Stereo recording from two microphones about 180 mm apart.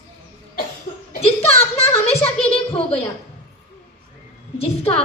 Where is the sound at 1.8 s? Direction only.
35° left (ahead or behind).